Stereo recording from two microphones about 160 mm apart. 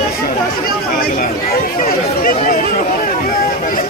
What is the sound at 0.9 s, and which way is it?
Speech, 65° left (ahead or behind).